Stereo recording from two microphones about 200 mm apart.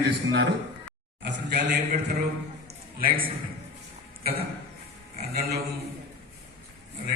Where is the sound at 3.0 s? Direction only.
45° right (ahead or behind).